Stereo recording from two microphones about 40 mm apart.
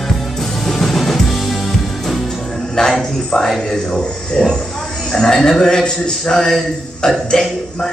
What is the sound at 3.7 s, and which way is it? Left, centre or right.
A man's voice, centre.